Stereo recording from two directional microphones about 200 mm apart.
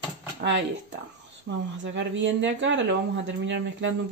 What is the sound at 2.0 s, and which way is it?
Speech, 65° right (ahead or behind).